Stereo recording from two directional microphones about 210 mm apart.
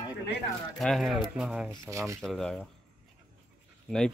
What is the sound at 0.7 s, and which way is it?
Speech, centre (ahead or behind).